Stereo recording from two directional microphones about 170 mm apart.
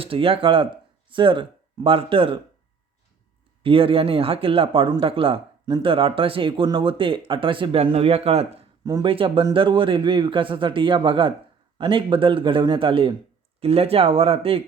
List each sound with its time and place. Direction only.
0.0 s speech: 35° right (ahead or behind)
3.6 s speech: 30° right (ahead or behind)
8.8 s a man's voice: 25° right (ahead or behind)